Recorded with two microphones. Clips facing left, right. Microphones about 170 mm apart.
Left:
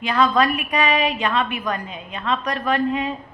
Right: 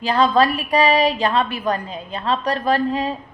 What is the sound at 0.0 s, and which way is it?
A woman's voice, 30° right (ahead or behind).